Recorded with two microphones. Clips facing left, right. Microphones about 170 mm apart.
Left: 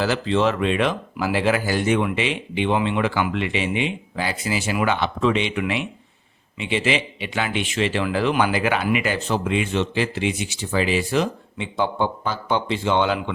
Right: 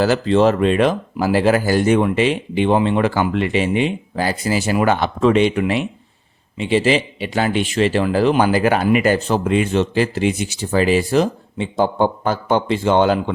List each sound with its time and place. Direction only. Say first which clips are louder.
0.0 s a man's voice: right 6 dB; 40° right (ahead or behind)